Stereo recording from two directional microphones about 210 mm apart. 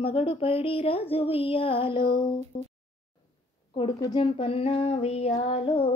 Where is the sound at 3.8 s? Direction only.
20° left (ahead or behind).